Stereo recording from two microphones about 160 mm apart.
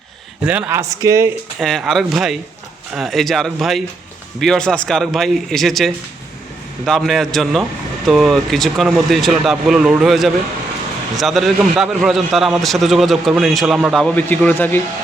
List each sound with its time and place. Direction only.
0.4 s speech: 10° right (ahead or behind)
1.5 s a man's voice: centre (ahead or behind)